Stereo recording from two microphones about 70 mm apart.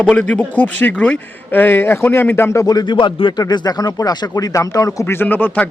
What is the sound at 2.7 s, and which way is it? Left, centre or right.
Speech, left.